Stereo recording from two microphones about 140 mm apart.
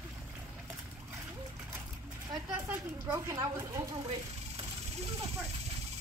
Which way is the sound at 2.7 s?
15° right (ahead or behind).